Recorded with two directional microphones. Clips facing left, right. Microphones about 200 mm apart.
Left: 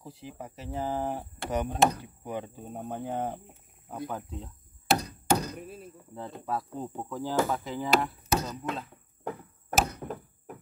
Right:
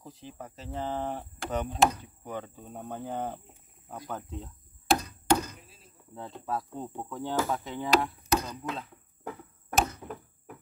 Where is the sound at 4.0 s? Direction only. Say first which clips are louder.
Left 2 dB; centre (ahead or behind).